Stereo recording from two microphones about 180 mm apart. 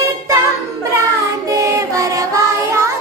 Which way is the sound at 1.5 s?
15° right (ahead or behind).